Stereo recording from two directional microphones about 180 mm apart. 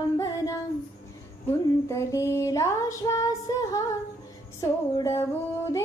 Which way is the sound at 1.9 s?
15° left (ahead or behind).